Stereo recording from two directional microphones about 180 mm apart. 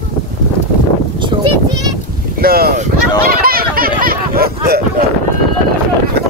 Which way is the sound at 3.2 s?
55° right (ahead or behind).